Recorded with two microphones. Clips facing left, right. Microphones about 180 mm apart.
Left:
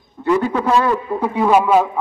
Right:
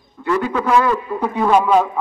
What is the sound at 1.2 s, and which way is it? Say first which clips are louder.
Speech: left 1 dB; 10° left (ahead or behind).